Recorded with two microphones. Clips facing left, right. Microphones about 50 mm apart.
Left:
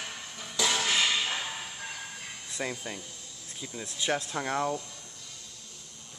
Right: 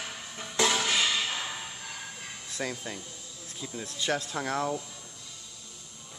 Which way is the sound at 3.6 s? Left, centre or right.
Centre.